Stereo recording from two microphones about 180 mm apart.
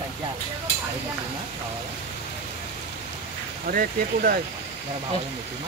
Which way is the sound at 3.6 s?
55° right (ahead or behind).